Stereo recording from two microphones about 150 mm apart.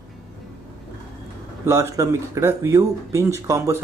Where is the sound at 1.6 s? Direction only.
20° right (ahead or behind).